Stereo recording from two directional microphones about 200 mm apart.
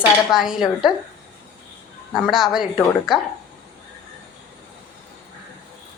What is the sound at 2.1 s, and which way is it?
Speech, centre (ahead or behind).